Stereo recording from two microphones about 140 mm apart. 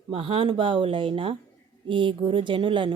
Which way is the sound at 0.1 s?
40° right (ahead or behind).